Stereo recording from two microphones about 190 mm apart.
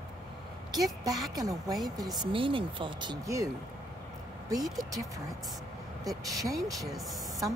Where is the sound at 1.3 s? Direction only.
20° right (ahead or behind).